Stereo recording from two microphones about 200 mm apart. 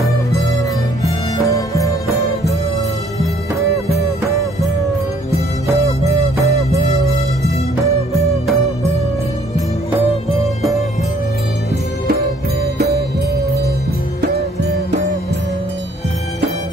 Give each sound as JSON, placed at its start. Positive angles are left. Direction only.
{"t": 1.4, "sound": "music", "side_deg": 15}
{"t": 6.4, "sound": "music", "side_deg": -15}
{"t": 8.1, "sound": "music", "side_deg": 0}